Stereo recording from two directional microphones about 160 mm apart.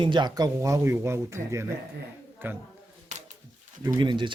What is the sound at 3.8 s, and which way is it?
Speech, 25° right (ahead or behind).